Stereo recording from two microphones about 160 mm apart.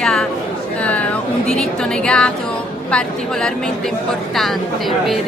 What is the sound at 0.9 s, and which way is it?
Speech, 5° left (ahead or behind).